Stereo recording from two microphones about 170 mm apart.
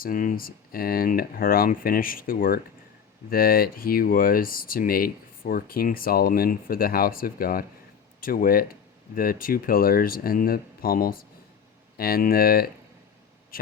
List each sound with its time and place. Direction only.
0.0 s speech: 55° left (ahead or behind)